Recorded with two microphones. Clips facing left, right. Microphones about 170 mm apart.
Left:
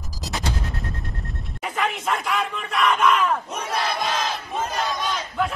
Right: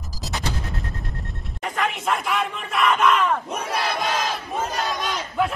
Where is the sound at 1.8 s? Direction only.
Centre (ahead or behind).